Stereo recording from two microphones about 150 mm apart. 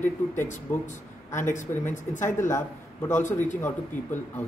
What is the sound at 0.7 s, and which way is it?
A man's voice, 15° left (ahead or behind).